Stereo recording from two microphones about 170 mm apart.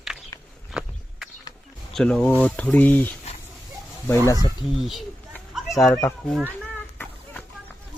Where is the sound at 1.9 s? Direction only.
5° left (ahead or behind).